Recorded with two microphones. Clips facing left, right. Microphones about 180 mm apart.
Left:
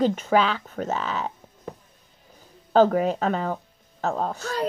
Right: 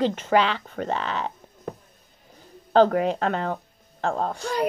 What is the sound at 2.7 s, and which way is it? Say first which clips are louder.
Speech: even; 5° left (ahead or behind).